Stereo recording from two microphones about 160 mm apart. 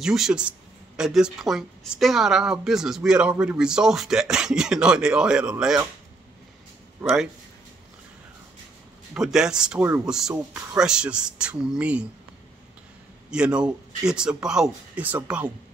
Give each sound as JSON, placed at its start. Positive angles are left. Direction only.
{"t": 0.0, "sound": "speech", "side_deg": -5}
{"t": 7.0, "sound": "speech", "side_deg": 0}
{"t": 9.1, "sound": "speech", "side_deg": -5}
{"t": 13.3, "sound": "speech", "side_deg": -5}